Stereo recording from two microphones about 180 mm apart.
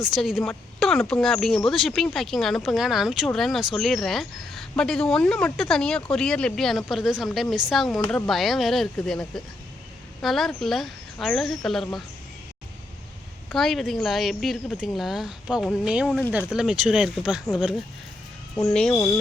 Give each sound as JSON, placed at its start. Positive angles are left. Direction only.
{"t": 0.0, "sound": "speech", "side_deg": 0}
{"t": 13.5, "sound": "speech", "side_deg": 0}
{"t": 18.7, "sound": "speech", "side_deg": 5}
{"t": 18.9, "sound": "music", "side_deg": 15}